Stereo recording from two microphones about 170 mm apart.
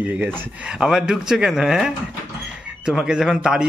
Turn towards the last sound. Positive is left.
turn(degrees=-5)  # may be behind; listen again after turning